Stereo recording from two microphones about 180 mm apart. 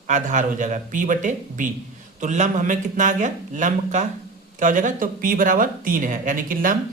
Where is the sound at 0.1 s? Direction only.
45° right (ahead or behind).